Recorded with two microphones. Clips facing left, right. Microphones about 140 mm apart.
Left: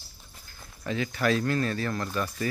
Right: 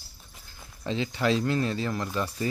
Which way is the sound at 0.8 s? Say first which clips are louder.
Even; 25° right (ahead or behind).